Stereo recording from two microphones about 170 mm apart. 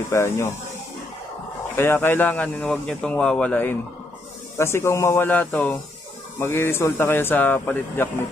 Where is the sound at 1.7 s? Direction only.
15° left (ahead or behind).